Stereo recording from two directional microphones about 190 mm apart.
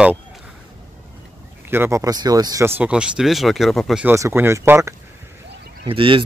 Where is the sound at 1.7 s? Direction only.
15° right (ahead or behind).